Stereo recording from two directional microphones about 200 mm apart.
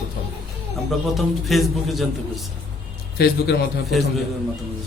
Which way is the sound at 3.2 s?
50° left (ahead or behind).